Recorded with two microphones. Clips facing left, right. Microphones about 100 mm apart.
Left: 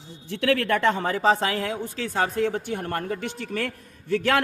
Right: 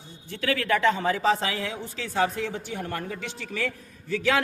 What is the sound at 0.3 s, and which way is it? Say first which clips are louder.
Speech: left 3 dB; 70° left (ahead or behind).